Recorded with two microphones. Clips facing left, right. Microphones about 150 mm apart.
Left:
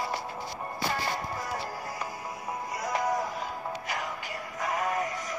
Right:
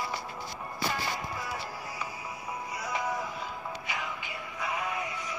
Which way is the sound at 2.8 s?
45° left (ahead or behind).